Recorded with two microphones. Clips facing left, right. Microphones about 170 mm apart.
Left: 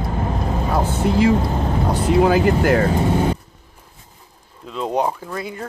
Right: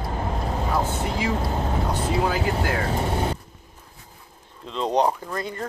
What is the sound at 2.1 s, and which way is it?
Speech, 75° left (ahead or behind).